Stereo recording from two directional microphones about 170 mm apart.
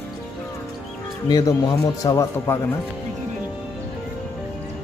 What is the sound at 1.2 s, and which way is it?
A man's voice, 25° left (ahead or behind).